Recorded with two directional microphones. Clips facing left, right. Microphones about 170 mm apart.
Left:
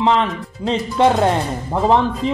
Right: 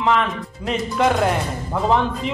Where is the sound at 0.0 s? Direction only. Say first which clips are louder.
Left 3 dB; 30° left (ahead or behind).